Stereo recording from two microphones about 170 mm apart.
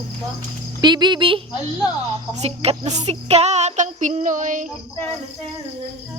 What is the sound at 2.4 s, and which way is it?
Music, 40° right (ahead or behind).